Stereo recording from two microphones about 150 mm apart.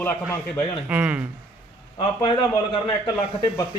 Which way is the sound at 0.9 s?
10° right (ahead or behind).